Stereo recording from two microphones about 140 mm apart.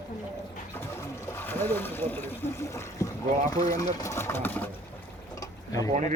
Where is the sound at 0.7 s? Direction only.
15° left (ahead or behind).